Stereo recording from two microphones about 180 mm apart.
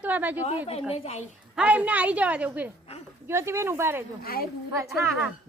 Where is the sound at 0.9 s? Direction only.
35° left (ahead or behind).